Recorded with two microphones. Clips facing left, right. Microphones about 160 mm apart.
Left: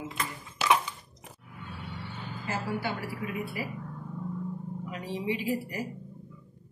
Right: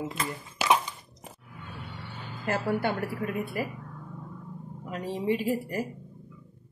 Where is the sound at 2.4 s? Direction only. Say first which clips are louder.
Right 5 dB; 55° right (ahead or behind).